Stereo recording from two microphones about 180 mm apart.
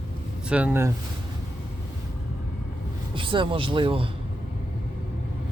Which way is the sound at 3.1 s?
30° right (ahead or behind).